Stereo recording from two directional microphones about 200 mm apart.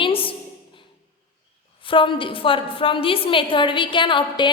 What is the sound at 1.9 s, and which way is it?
A woman's voice, 25° left (ahead or behind).